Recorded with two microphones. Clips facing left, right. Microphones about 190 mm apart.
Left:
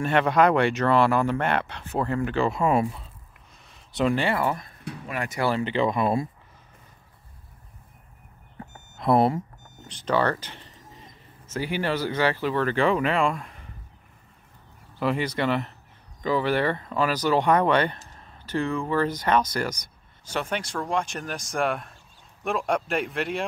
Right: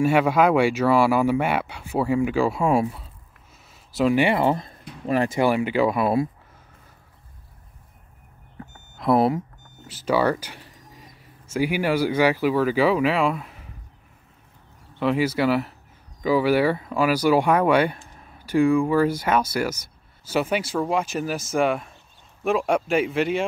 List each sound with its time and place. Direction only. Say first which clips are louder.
0.0 s speech: right 2 dB; 5° right (ahead or behind)
3.6 s a sound: right 3 dB; 5° right (ahead or behind)
4.2 s speech: right 5 dB; 20° right (ahead or behind)
5.4 s speech: right 1 dB; 10° right (ahead or behind)
8.9 s speech: right 1 dB; centre (ahead or behind)
15.0 s speech: right 4 dB; 5° right (ahead or behind)